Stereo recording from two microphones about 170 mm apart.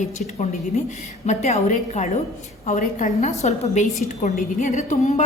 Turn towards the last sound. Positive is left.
turn(degrees=40)  # may be behind; listen again after turning